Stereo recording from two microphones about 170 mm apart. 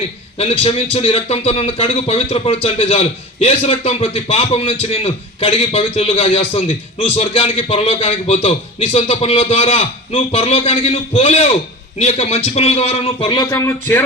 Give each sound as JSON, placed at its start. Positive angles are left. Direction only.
{"t": 0.3, "sound": "a man's voice", "side_deg": 35}